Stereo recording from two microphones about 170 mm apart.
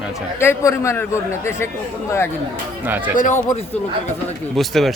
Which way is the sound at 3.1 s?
50° left (ahead or behind).